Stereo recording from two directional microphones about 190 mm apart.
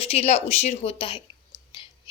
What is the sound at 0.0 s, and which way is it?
Speech, 35° left (ahead or behind).